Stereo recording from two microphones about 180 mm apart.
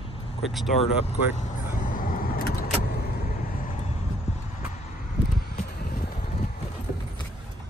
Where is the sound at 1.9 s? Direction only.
50° left (ahead or behind).